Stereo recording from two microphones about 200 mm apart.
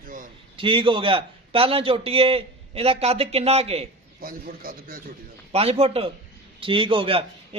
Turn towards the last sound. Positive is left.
turn(degrees=-25)  # may be behind; listen again after turning